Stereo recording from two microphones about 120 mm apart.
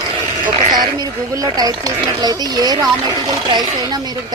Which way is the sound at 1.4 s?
30° right (ahead or behind).